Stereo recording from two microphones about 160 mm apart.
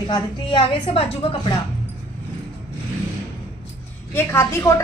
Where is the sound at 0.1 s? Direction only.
30° left (ahead or behind).